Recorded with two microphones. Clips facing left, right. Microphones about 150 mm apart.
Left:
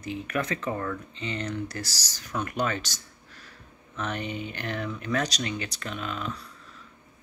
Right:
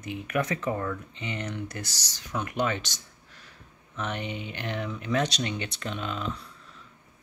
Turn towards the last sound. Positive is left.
turn(degrees=-25)  # may be behind; listen again after turning